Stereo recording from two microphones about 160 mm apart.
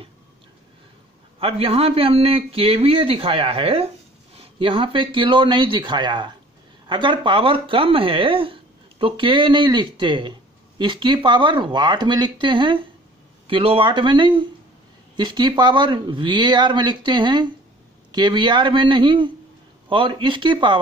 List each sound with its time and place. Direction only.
1.4 s speech: 35° right (ahead or behind)